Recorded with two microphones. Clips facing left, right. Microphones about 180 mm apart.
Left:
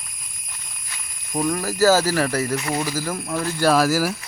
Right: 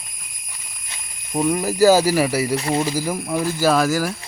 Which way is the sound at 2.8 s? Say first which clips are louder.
Right 3 dB; 15° right (ahead or behind).